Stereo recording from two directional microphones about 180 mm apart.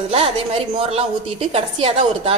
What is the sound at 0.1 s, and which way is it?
A woman's voice, 35° right (ahead or behind).